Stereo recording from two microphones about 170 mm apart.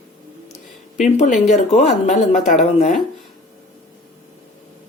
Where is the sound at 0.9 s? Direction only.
45° left (ahead or behind).